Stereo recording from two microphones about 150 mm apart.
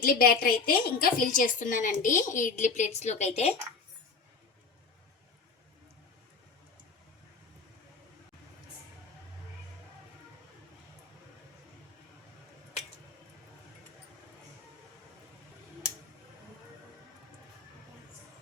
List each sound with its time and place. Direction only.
0.0 s a woman's voice: 75° left (ahead or behind); by 3.5 s 45° left (ahead or behind)